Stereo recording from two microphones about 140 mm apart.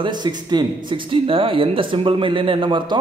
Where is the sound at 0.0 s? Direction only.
30° right (ahead or behind).